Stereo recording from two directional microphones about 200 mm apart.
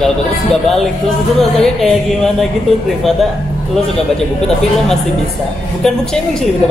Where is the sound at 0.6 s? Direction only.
Centre (ahead or behind).